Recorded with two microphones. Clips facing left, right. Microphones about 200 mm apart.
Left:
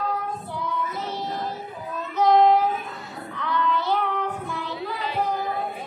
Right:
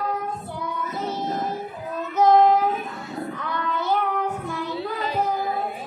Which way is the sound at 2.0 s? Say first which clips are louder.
Right 2 dB; 45° right (ahead or behind).